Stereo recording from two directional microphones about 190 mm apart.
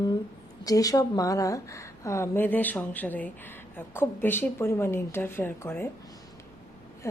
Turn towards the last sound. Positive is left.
turn(degrees=10)  # may be behind; listen again after turning